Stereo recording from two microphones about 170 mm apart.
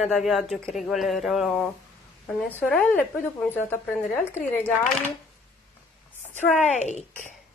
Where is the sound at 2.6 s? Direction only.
10° left (ahead or behind).